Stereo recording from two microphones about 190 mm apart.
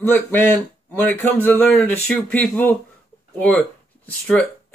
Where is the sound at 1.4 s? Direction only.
5° left (ahead or behind).